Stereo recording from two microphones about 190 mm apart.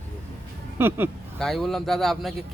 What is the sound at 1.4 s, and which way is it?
Speech, centre (ahead or behind).